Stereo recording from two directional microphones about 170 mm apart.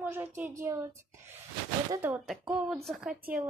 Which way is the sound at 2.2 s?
Centre (ahead or behind).